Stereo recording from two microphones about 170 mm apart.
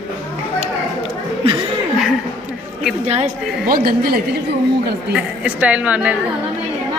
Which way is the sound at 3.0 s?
40° right (ahead or behind).